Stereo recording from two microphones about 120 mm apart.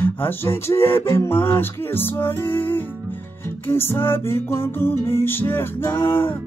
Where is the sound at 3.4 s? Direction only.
20° left (ahead or behind).